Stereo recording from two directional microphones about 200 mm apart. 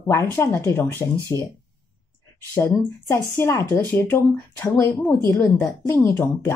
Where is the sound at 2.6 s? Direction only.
10° left (ahead or behind).